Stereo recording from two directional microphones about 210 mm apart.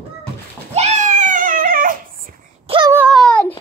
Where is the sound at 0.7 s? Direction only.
30° right (ahead or behind).